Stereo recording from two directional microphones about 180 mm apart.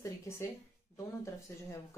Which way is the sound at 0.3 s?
15° left (ahead or behind).